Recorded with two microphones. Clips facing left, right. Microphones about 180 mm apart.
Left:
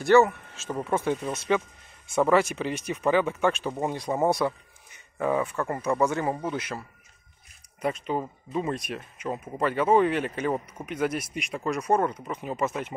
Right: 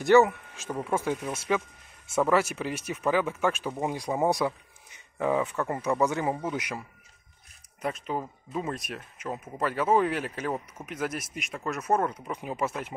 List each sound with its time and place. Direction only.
0.0 s speech: 15° right (ahead or behind)
7.8 s speech: centre (ahead or behind)